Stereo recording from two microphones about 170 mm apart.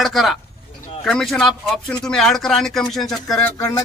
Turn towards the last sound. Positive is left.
turn(degrees=20)  # may be behind; listen again after turning